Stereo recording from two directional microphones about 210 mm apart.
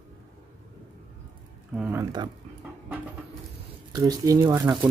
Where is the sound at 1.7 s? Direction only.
10° right (ahead or behind).